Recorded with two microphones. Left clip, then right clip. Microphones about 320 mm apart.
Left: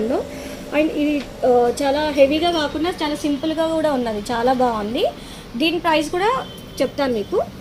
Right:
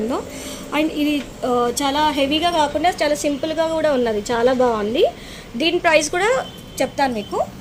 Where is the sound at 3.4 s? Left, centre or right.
Centre.